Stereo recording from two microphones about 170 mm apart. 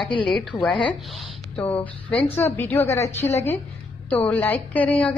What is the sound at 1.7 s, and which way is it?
A woman's voice, 10° left (ahead or behind).